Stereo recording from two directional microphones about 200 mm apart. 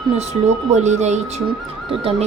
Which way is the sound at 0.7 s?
35° right (ahead or behind).